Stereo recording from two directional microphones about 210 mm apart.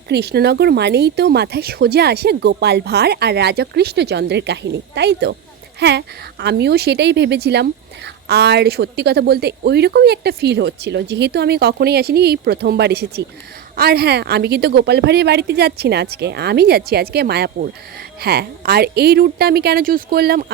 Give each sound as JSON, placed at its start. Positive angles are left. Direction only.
{"t": 0.1, "sound": "a woman's voice", "side_deg": -50}